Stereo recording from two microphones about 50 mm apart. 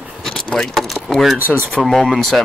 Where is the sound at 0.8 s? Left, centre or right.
Centre.